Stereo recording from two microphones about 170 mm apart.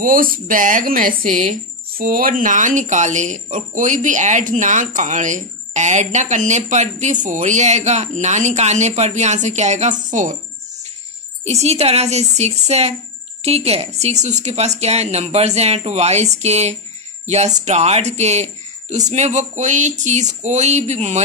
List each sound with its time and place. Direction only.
0.0 s speech: 55° right (ahead or behind)
11.4 s speech: 40° right (ahead or behind)